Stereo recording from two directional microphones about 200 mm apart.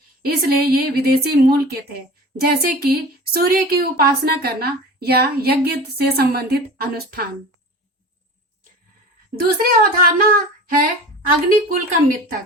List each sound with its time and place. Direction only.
0.2 s speech: 50° right (ahead or behind)
9.3 s speech: 50° right (ahead or behind)
11.7 s speech: 40° right (ahead or behind)